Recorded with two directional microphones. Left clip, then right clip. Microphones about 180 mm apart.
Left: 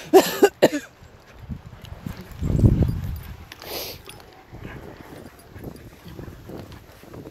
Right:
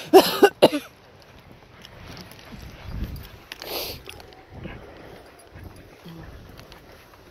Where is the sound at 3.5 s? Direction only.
Centre (ahead or behind).